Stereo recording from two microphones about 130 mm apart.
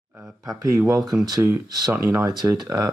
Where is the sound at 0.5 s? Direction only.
25° right (ahead or behind).